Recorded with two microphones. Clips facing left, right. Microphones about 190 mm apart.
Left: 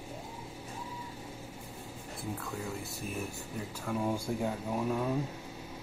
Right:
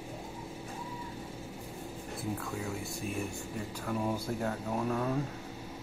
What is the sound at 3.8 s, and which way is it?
Speech, 10° left (ahead or behind).